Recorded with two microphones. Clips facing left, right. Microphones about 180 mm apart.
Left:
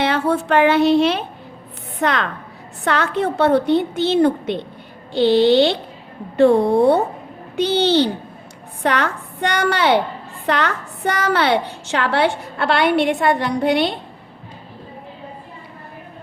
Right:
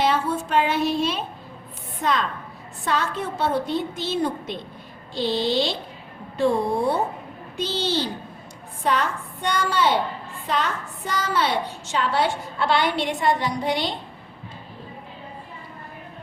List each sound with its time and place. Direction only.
0.0 s a woman's voice: 70° left (ahead or behind)